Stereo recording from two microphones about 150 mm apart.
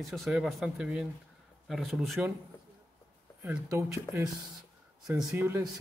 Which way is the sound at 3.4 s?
15° right (ahead or behind).